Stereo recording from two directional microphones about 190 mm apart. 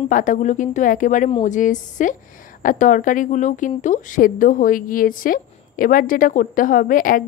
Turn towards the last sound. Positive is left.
turn(degrees=45)  # may be behind; listen again after turning